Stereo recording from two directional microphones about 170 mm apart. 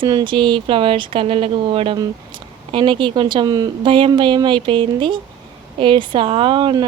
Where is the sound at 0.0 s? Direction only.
25° right (ahead or behind).